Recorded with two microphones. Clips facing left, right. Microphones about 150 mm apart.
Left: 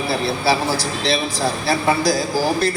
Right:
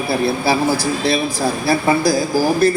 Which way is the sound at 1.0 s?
50° right (ahead or behind).